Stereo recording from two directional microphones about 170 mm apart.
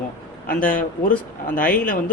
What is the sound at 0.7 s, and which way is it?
Speech, 55° left (ahead or behind).